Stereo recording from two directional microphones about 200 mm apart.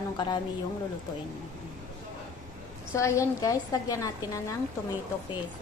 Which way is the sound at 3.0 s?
15° left (ahead or behind).